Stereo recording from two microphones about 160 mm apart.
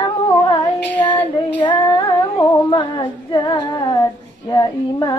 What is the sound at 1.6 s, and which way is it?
Female singing, 30° left (ahead or behind).